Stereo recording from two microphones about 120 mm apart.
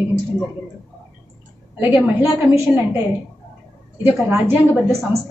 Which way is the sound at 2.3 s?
20° right (ahead or behind).